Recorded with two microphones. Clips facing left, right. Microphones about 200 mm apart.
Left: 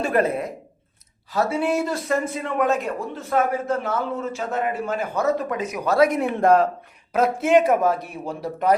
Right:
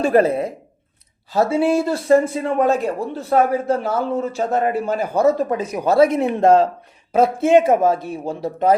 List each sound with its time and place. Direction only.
0.0 s a man's voice: 30° right (ahead or behind)